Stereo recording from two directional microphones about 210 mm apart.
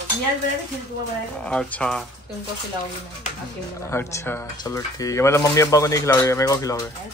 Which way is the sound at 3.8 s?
10° left (ahead or behind).